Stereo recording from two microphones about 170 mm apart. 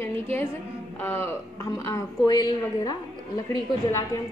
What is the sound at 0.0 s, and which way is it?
Music, 15° left (ahead or behind).